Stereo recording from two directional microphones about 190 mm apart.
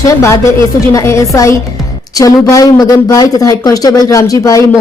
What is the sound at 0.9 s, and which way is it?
Speech, 15° left (ahead or behind).